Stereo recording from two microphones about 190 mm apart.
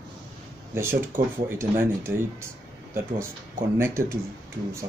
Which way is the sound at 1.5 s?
15° right (ahead or behind).